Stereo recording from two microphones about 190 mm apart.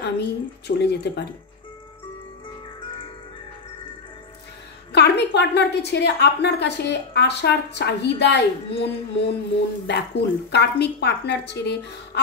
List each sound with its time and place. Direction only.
0.0 s a woman's voice: 60° left (ahead or behind)
4.9 s a woman's voice: 65° left (ahead or behind)